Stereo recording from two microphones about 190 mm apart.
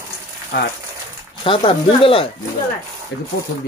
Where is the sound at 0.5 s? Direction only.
60° left (ahead or behind).